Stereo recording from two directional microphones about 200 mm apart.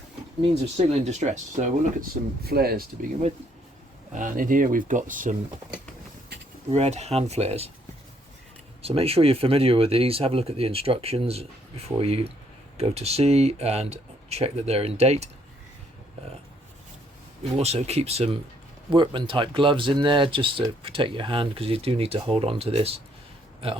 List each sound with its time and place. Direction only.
0.8 s speech: 35° right (ahead or behind)
2.5 s speech: 50° right (ahead or behind)
4.1 s speech: 40° right (ahead or behind)
6.7 s speech: 30° right (ahead or behind)
8.8 s speech: 30° right (ahead or behind)
17.6 s speech: 30° right (ahead or behind)